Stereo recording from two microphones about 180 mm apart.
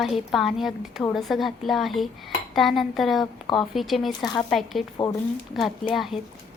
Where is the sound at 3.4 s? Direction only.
25° left (ahead or behind).